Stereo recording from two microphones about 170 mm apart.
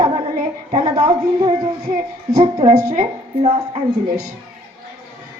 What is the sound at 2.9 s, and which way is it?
Speech, 45° right (ahead or behind).